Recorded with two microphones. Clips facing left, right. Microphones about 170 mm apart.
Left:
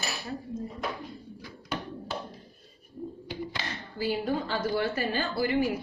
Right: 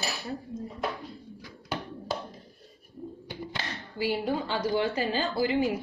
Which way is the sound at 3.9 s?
15° right (ahead or behind).